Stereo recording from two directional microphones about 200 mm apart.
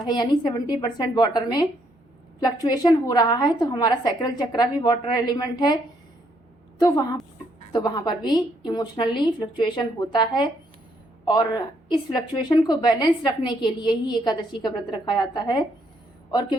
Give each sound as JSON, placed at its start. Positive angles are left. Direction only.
{"t": 0.1, "sound": "a woman's voice", "side_deg": 20}